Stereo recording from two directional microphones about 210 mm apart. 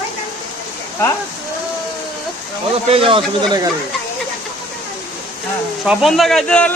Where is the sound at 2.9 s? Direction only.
25° right (ahead or behind).